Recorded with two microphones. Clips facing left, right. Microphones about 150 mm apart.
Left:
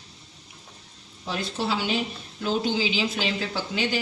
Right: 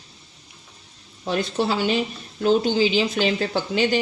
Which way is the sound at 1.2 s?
50° right (ahead or behind).